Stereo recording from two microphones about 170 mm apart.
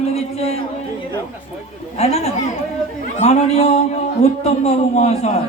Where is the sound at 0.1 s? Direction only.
40° left (ahead or behind).